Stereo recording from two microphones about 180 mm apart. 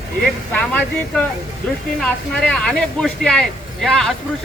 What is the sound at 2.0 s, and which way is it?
Speech, 5° left (ahead or behind).